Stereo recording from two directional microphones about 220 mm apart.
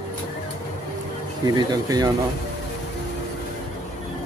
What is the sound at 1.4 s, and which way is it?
Speech, 15° right (ahead or behind).